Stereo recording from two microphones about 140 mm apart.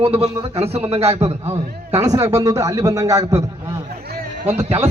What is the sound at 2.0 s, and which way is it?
A man's voice, 25° right (ahead or behind).